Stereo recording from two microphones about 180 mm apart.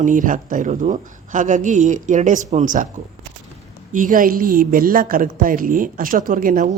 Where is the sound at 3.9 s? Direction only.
45° right (ahead or behind).